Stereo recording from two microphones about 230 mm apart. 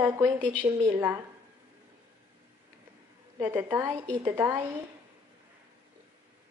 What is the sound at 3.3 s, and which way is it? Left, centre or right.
A woman's voice, centre.